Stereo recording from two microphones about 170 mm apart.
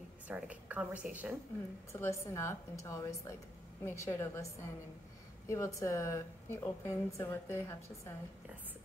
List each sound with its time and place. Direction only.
0.3 s a woman's voice: 10° right (ahead or behind)
1.9 s a woman's voice: 15° left (ahead or behind)
5.5 s a woman's voice: 15° left (ahead or behind)